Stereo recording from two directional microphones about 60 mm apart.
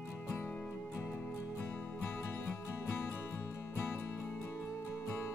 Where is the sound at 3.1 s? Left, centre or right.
Left.